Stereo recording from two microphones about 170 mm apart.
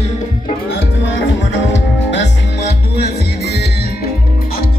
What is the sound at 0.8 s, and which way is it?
Music, 90° left.